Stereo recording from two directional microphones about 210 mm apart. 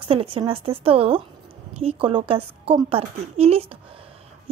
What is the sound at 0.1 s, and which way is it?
A child's voice, 25° right (ahead or behind).